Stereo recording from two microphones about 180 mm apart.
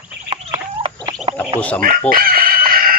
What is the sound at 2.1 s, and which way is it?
Chicken, 55° right (ahead or behind).